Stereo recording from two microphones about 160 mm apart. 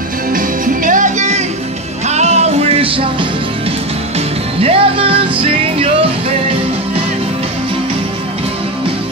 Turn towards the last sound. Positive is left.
turn(degrees=-35)  # may be behind; listen again after turning